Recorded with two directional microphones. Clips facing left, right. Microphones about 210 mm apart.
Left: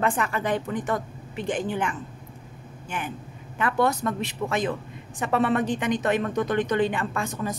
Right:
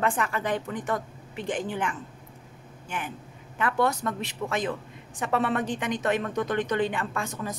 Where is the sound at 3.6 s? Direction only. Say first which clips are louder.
Left 2 dB; 25° left (ahead or behind).